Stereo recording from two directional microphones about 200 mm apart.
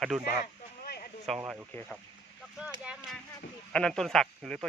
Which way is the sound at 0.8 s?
50° left (ahead or behind).